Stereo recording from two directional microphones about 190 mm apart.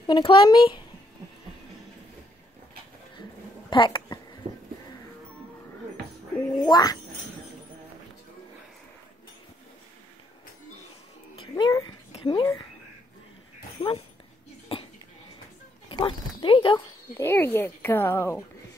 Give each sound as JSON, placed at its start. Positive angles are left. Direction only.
{"t": 0.0, "sound": "speech", "side_deg": 25}
{"t": 3.7, "sound": "speech", "side_deg": 25}
{"t": 6.6, "sound": "speech", "side_deg": 20}
{"t": 11.3, "sound": "speech", "side_deg": 25}
{"t": 12.1, "sound": "a sound", "side_deg": 25}
{"t": 13.7, "sound": "speech", "side_deg": 25}
{"t": 14.7, "sound": "a sound", "side_deg": 30}
{"t": 15.9, "sound": "speech", "side_deg": 25}
{"t": 17.2, "sound": "speech", "side_deg": 10}